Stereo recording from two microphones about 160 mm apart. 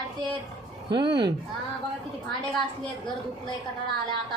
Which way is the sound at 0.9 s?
30° right (ahead or behind).